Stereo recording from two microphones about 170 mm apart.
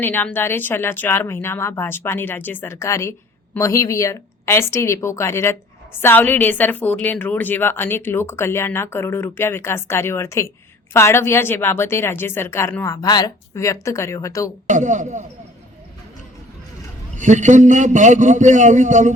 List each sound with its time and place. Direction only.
0.0 s speech: 10° left (ahead or behind)
14.7 s a man's voice: 45° right (ahead or behind)
17.2 s a man's voice: 45° right (ahead or behind)